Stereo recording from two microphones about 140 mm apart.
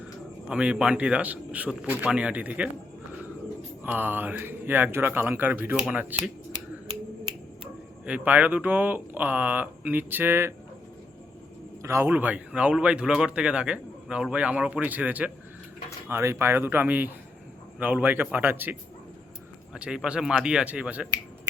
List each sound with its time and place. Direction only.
0.4 s speech: 5° right (ahead or behind)
3.8 s speech: 15° right (ahead or behind)
8.0 s speech: 10° right (ahead or behind)
11.8 s speech: 20° right (ahead or behind)